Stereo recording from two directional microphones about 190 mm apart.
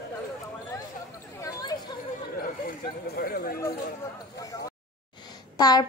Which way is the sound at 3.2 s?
55° left (ahead or behind).